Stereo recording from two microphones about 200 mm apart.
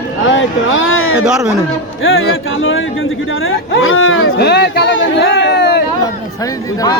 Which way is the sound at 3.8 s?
75° left (ahead or behind).